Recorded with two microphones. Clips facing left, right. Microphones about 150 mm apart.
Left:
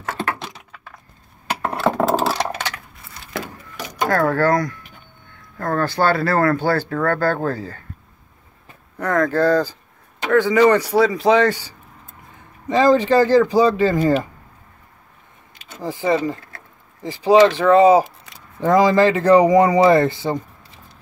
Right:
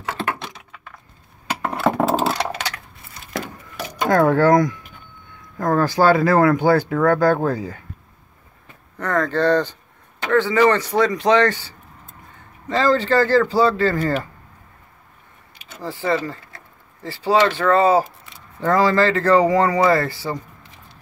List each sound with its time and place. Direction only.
1.6 s a sound: centre (ahead or behind)
4.1 s speech: 15° right (ahead or behind)
8.9 s speech: 10° left (ahead or behind)
15.8 s speech: 15° left (ahead or behind)